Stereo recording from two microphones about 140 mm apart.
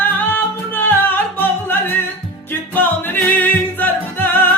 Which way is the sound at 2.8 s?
15° left (ahead or behind).